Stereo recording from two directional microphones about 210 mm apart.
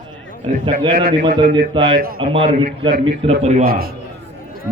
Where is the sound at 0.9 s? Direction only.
45° right (ahead or behind).